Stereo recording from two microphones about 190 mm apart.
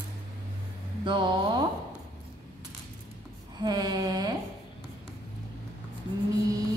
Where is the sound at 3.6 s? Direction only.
20° right (ahead or behind).